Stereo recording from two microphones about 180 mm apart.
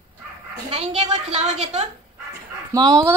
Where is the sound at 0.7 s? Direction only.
35° right (ahead or behind).